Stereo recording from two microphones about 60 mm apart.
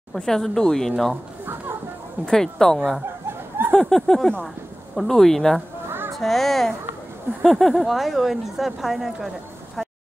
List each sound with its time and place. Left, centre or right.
0.1 s speech: centre
1.4 s a sound: right
2.2 s speech: centre
3.3 s a sound: right
3.8 s speech: centre
5.9 s music: right
6.1 s speech: centre